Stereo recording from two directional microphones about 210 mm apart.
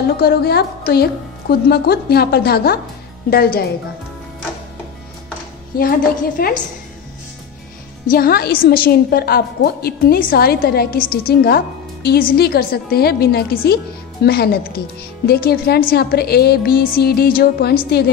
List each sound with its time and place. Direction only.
0.2 s a woman's voice: 50° left (ahead or behind)
5.8 s a woman's voice: 45° left (ahead or behind)
8.1 s a woman's voice: 45° left (ahead or behind)